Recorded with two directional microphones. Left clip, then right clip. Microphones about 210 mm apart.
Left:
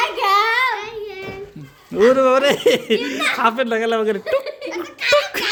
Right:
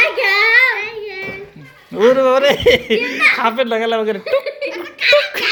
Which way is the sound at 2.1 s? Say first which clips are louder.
Right 2 dB; 30° left (ahead or behind).